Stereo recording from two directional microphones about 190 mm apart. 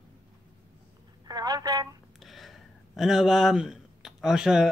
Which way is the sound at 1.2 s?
20° right (ahead or behind).